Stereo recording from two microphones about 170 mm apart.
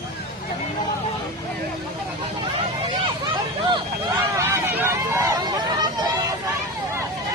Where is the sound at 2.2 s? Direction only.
30° right (ahead or behind).